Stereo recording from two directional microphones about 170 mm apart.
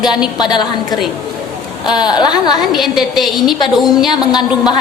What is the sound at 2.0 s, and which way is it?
Speech, 25° left (ahead or behind).